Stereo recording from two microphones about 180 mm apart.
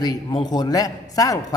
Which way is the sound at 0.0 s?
20° left (ahead or behind).